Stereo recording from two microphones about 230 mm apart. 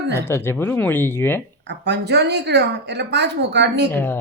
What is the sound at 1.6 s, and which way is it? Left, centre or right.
Speech, right.